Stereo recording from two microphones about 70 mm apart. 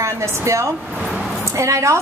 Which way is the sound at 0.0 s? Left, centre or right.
Right.